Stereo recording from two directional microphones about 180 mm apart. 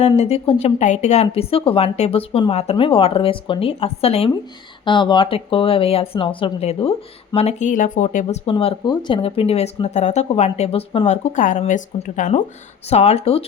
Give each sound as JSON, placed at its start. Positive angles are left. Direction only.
{"t": 0.0, "sound": "speech", "side_deg": 35}
{"t": 8.4, "sound": "speech", "side_deg": 30}